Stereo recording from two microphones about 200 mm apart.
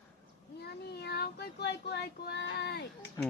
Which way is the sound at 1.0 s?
55° left (ahead or behind).